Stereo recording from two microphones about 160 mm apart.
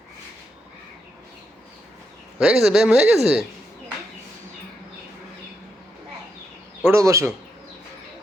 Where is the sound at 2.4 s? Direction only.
5° right (ahead or behind).